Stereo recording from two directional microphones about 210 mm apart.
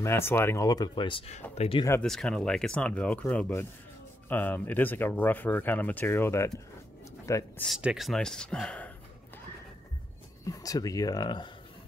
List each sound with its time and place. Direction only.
0.0 s speech: 10° left (ahead or behind)
1.9 s speech: 5° left (ahead or behind)
7.6 s speech: centre (ahead or behind)
10.4 s speech: 15° left (ahead or behind)